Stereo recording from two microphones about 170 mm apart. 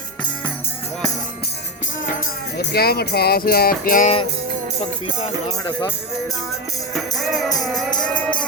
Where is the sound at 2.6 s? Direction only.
70° left (ahead or behind); by 4.1 s 55° left (ahead or behind).